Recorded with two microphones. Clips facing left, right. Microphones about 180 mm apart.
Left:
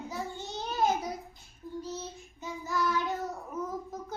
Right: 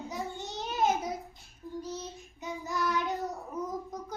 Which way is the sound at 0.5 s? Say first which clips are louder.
Even; 20° right (ahead or behind).